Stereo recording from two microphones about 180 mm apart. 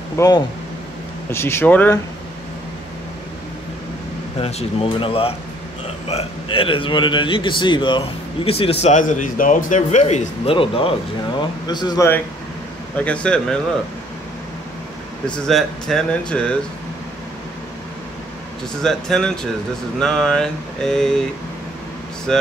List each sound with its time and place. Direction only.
0.2 s speech: 15° left (ahead or behind)
4.4 s a man's voice: 35° left (ahead or behind)
12.9 s speech: 5° left (ahead or behind)
15.2 s speech: 5° left (ahead or behind)
18.8 s speech: 5° left (ahead or behind)
22.3 s speech: 5° left (ahead or behind)